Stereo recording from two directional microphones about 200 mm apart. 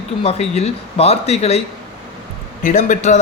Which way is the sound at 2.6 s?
40° left (ahead or behind).